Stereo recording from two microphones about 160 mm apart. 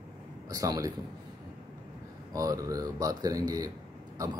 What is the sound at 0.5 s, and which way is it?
Speech, 25° right (ahead or behind).